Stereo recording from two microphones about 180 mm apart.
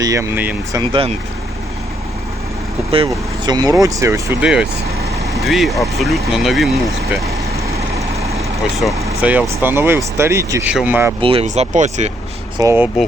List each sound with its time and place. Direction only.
0.0 s speech: 15° right (ahead or behind)
0.8 s speech: 30° right (ahead or behind)
2.9 s speech: 25° right (ahead or behind); by 6.7 s centre (ahead or behind)
8.8 s speech: 10° right (ahead or behind)
11.2 s speech: 30° right (ahead or behind)
11.4 s speech: 40° right (ahead or behind)
12.5 s speech: 15° right (ahead or behind)